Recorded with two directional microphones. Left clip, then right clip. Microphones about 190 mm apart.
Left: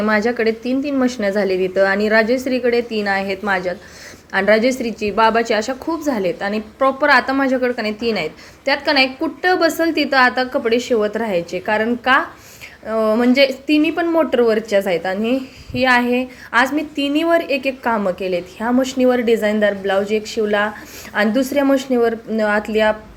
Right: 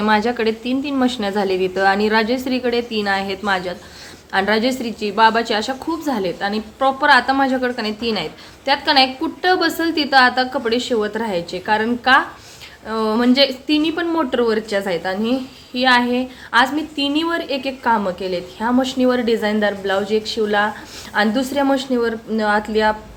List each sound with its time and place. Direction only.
0.0 s a woman's voice: 5° left (ahead or behind)